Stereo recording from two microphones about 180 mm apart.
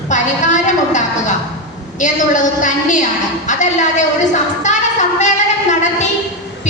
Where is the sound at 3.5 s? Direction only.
45° left (ahead or behind).